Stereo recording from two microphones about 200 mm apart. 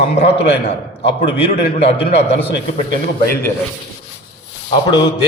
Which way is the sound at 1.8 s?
30° left (ahead or behind).